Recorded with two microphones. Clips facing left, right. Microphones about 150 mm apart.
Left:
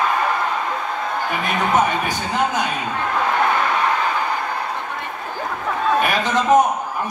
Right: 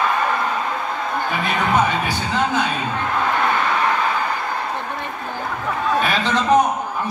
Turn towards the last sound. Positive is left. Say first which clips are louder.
# left 1 dB
turn(degrees=20)  # may be behind; listen again after turning